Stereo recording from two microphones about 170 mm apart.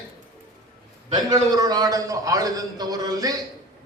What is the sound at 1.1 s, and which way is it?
A man's voice, 20° right (ahead or behind).